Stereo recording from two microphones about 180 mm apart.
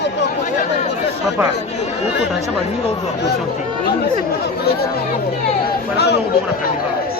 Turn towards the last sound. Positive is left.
turn(degrees=65)  # may be behind; listen again after turning